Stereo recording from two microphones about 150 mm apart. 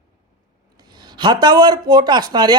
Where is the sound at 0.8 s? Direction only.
30° right (ahead or behind).